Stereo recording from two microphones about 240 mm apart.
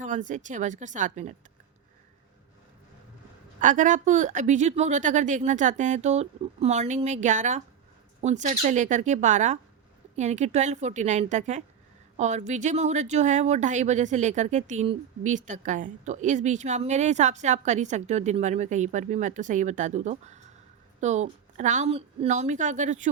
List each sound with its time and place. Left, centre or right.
0.0 s speech: right
3.6 s speech: right